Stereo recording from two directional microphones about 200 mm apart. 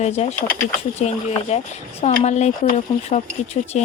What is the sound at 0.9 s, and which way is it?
Speech, 35° left (ahead or behind).